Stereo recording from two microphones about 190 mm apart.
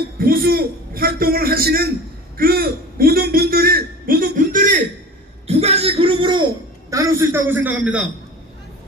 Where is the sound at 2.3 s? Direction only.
50° right (ahead or behind); by 6.4 s 25° right (ahead or behind).